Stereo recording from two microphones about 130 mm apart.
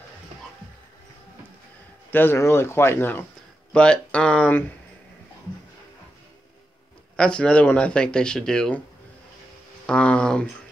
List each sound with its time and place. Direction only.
2.0 s speech: 15° left (ahead or behind)
7.2 s speech: 5° left (ahead or behind)
9.8 s speech: 10° left (ahead or behind)